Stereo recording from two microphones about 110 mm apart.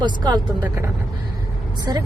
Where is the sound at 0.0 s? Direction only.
40° right (ahead or behind).